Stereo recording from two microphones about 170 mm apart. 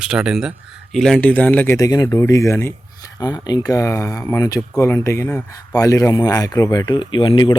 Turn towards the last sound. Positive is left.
turn(degrees=30)  # may be behind; listen again after turning